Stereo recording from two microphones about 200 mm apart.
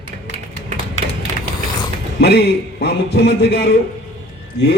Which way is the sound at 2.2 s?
55° left (ahead or behind).